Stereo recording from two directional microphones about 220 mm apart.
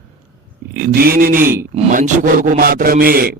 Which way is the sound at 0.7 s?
40° right (ahead or behind).